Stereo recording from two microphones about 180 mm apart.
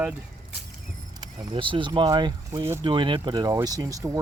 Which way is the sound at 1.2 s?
25° right (ahead or behind).